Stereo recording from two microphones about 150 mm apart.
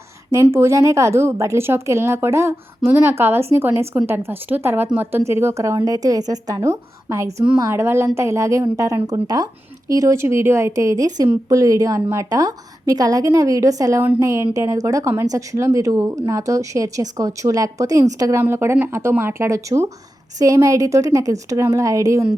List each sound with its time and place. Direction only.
0.5 s a woman's voice: 20° right (ahead or behind)